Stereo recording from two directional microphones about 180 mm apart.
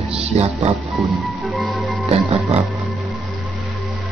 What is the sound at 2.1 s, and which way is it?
Speech, 35° right (ahead or behind).